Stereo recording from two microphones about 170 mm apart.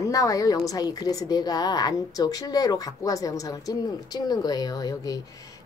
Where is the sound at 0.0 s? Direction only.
20° left (ahead or behind).